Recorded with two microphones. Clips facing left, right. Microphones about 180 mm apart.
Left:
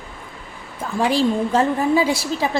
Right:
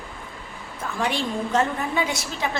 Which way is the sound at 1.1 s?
35° left (ahead or behind).